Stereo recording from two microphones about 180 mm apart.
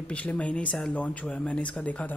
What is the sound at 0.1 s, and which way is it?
A man's voice, 10° left (ahead or behind).